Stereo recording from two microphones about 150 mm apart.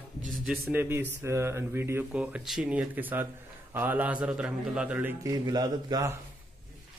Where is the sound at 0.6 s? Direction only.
15° right (ahead or behind).